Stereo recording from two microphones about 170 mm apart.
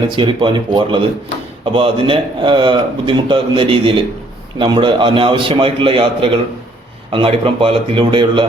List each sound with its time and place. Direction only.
0.2 s a man's voice: 30° right (ahead or behind)